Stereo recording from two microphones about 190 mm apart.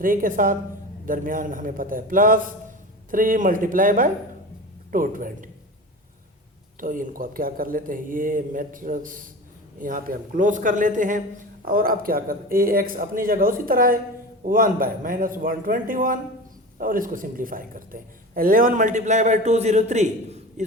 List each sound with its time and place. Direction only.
0.0 s a man's voice: 45° right (ahead or behind)
6.7 s a man's voice: 45° right (ahead or behind)